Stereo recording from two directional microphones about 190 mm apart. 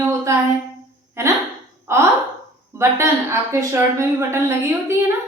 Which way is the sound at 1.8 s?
15° right (ahead or behind).